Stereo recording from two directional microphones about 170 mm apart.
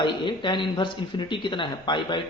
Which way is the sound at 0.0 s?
30° left (ahead or behind).